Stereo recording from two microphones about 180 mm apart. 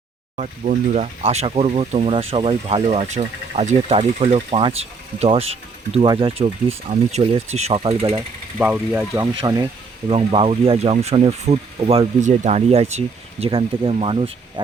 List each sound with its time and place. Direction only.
0.3 s speech: 40° right (ahead or behind)
8.5 s speech: 5° right (ahead or behind)
10.1 s speech: 30° right (ahead or behind)